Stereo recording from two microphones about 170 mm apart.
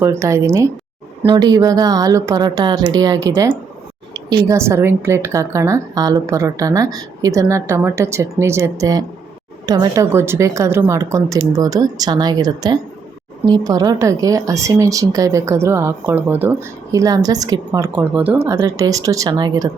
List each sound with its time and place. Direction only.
0.0 s a woman's voice: 15° right (ahead or behind)
17.9 s a woman's voice: 10° right (ahead or behind); by 19.6 s 25° right (ahead or behind)